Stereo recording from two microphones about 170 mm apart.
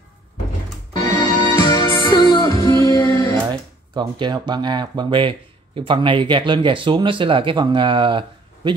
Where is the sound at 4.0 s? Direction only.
25° right (ahead or behind).